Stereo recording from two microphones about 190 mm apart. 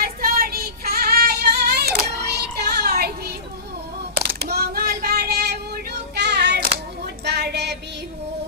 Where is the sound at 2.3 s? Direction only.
60° right (ahead or behind).